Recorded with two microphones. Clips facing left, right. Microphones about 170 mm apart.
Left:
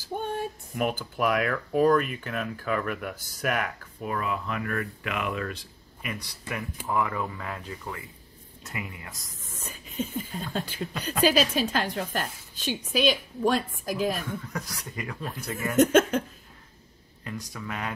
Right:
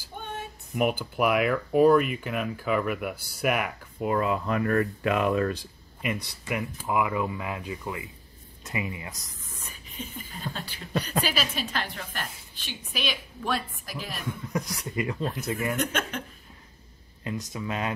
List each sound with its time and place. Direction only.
0.7 s speech: 10° right (ahead or behind)
4.0 s speech: 25° right (ahead or behind)
6.0 s speech: 20° right (ahead or behind)
9.9 s a woman's voice: 45° left (ahead or behind)
14.5 s speech: 20° right (ahead or behind)
15.7 s a woman's voice: 45° left (ahead or behind)
17.2 s speech: 20° right (ahead or behind)